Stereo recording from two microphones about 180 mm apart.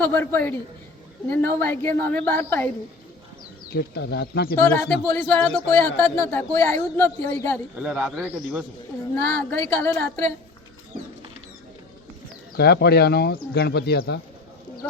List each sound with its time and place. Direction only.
0.0 s speech: 10° left (ahead or behind)
3.7 s speech: 65° left (ahead or behind)
4.5 s speech: 10° left (ahead or behind)
7.8 s speech: 5° right (ahead or behind)
9.2 s speech: 10° left (ahead or behind)
12.5 s speech: 60° left (ahead or behind)